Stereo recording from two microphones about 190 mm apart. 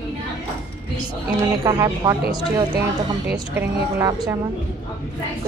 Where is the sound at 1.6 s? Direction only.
20° right (ahead or behind).